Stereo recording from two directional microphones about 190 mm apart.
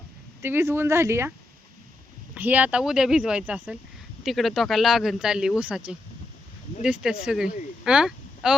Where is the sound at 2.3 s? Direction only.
10° right (ahead or behind).